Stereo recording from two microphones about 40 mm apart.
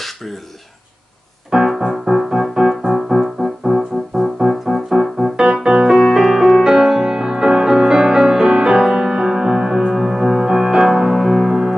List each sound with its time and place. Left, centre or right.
0.0 s throat clearing: centre
1.5 s music: centre
5.3 s keyboard: centre
5.9 s music: centre
6.6 s music: centre